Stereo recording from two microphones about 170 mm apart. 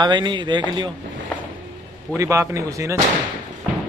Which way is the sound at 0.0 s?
25° right (ahead or behind).